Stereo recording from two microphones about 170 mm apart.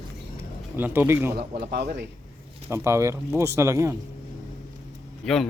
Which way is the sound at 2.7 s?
15° right (ahead or behind).